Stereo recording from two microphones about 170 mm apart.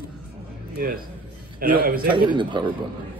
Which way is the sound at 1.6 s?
55° right (ahead or behind).